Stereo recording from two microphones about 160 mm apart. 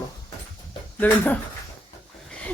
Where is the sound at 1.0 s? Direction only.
10° left (ahead or behind).